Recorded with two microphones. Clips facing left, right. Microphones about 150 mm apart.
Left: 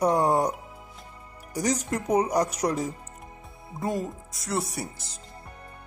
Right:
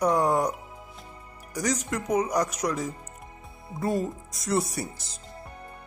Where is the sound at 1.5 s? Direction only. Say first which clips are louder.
Left 1 dB; 30° left (ahead or behind).